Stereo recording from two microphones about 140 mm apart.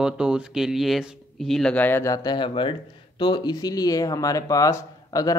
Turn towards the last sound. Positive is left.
turn(degrees=25)  # may be behind; listen again after turning